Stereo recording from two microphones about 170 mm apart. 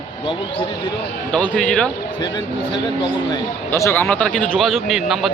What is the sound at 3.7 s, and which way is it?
A man's voice, 15° left (ahead or behind).